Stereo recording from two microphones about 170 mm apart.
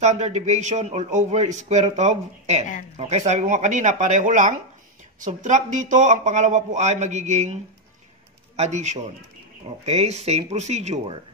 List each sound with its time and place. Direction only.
0.0 s a man's voice: 40° right (ahead or behind)